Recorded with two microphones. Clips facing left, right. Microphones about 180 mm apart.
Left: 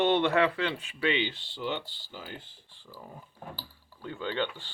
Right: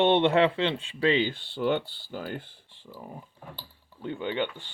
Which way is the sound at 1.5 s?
55° right (ahead or behind).